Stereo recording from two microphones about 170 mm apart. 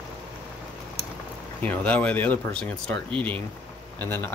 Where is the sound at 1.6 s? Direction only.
10° left (ahead or behind).